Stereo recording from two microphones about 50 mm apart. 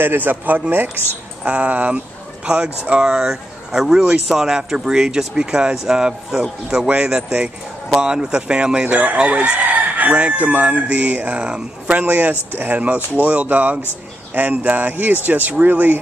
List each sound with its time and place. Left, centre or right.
0.0 s speech: right
1.4 s speech: right
2.4 s speech: centre
3.2 s speech: centre
8.8 s speech: right
12.0 s speech: right